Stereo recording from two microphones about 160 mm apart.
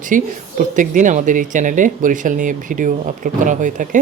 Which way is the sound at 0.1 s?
55° right (ahead or behind).